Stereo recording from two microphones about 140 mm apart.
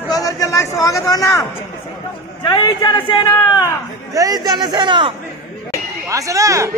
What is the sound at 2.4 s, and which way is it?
A man's voice, 30° left (ahead or behind).